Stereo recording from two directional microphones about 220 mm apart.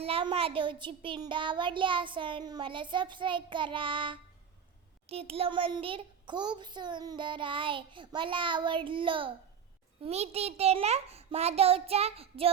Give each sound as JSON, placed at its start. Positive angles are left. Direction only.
{"t": 0.0, "sound": "a child's voice", "side_deg": -25}